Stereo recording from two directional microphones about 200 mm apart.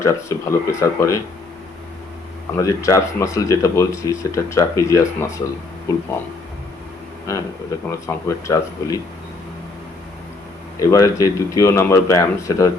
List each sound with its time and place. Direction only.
0.0 s speech: 15° left (ahead or behind)
2.6 s speech: 15° left (ahead or behind)
7.3 s speech: 15° left (ahead or behind)
10.8 s speech: 15° left (ahead or behind)